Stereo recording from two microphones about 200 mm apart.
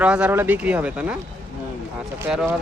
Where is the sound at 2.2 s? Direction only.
5° right (ahead or behind).